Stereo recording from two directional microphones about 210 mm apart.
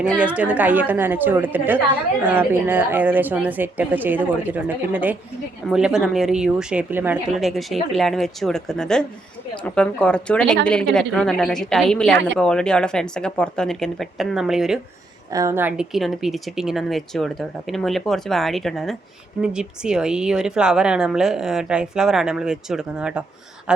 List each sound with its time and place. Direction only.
0.3 s speech: 5° right (ahead or behind)
15.3 s speech: 15° right (ahead or behind)